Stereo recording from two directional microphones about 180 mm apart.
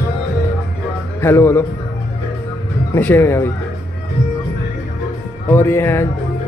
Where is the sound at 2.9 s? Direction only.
10° left (ahead or behind).